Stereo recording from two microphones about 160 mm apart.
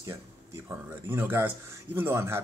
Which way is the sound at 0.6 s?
15° right (ahead or behind).